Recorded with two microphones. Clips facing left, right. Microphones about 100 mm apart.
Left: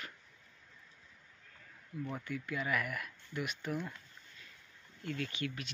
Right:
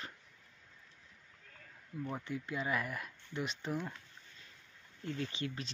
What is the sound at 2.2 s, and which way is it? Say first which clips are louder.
Speech: even; 30° right (ahead or behind).